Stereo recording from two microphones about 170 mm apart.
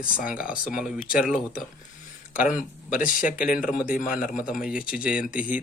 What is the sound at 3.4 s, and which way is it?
Speech, 50° left (ahead or behind).